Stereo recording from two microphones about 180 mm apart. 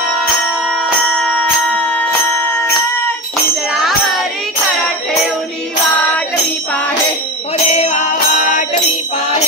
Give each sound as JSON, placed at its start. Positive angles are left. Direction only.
{"t": 0.7, "sound": "bell", "side_deg": 0}
{"t": 3.7, "sound": "music", "side_deg": 0}
{"t": 7.5, "sound": "music", "side_deg": 40}